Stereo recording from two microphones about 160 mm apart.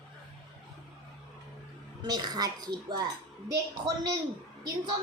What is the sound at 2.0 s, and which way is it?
A woman's voice, 25° right (ahead or behind).